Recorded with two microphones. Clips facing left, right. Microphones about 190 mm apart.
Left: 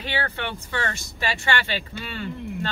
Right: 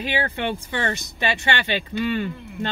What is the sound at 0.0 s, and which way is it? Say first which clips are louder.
Speech: right 4 dB; 20° right (ahead or behind).